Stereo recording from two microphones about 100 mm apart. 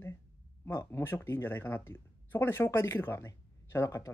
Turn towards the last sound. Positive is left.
turn(degrees=30)  # may be behind; listen again after turning